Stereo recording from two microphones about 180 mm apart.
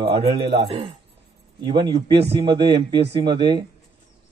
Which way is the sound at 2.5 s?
25° right (ahead or behind).